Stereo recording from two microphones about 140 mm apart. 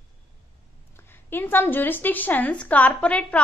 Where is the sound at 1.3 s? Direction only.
15° left (ahead or behind).